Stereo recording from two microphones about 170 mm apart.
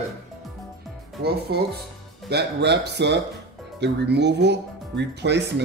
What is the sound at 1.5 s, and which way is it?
Speech, 75° right (ahead or behind).